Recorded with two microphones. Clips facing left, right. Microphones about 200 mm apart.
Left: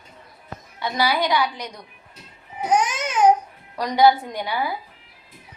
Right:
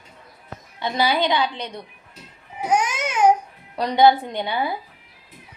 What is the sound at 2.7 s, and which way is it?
Babbling, 10° right (ahead or behind).